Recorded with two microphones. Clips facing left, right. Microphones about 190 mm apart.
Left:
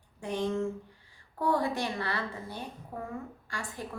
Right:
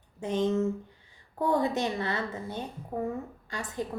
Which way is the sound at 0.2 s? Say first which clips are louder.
Right 4 dB; 20° right (ahead or behind).